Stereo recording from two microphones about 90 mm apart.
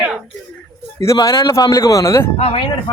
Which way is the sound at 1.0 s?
40° left (ahead or behind).